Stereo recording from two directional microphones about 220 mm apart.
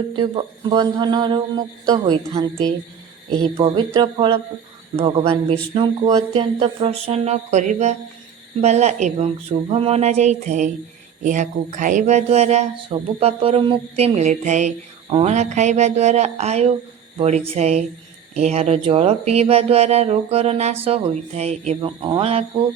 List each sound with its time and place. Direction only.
0.2 s speech: 25° right (ahead or behind)